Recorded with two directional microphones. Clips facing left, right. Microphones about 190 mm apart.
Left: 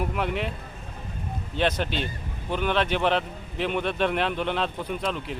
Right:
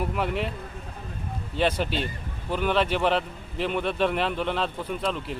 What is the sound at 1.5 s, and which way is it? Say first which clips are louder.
A man's voice: right 1 dB; 5° right (ahead or behind).